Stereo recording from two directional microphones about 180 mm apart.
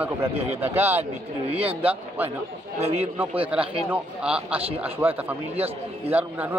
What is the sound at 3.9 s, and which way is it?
Speech, 5° right (ahead or behind).